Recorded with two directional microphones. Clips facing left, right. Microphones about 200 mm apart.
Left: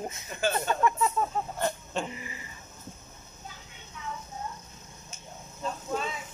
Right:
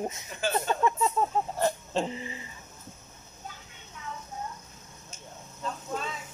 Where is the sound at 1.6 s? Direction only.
35° right (ahead or behind).